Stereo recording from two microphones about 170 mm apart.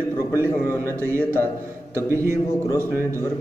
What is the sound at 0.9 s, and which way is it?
A man's voice, 15° right (ahead or behind).